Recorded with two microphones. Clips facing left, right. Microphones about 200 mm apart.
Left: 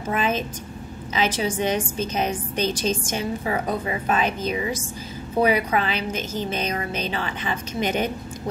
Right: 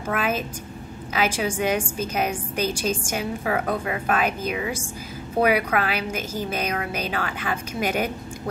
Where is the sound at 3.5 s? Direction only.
70° right (ahead or behind).